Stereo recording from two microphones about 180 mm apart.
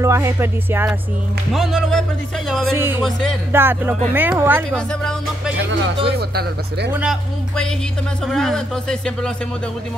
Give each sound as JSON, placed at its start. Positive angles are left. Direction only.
{"t": 0.0, "sound": "music", "side_deg": -15}
{"t": 1.5, "sound": "speech", "side_deg": 0}
{"t": 2.7, "sound": "music", "side_deg": -15}
{"t": 3.0, "sound": "speech", "side_deg": 5}
{"t": 3.5, "sound": "music", "side_deg": -10}
{"t": 6.0, "sound": "speech", "side_deg": -65}
{"t": 6.9, "sound": "music", "side_deg": -5}
{"t": 8.3, "sound": "speech", "side_deg": 0}